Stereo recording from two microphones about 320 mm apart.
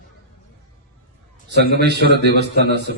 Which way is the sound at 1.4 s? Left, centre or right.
Right.